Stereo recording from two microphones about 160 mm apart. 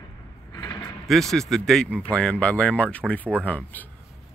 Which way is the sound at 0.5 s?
25° left (ahead or behind).